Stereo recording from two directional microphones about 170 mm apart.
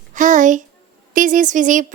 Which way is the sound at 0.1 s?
50° right (ahead or behind).